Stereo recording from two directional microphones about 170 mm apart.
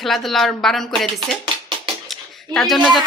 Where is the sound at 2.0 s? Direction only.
Centre (ahead or behind).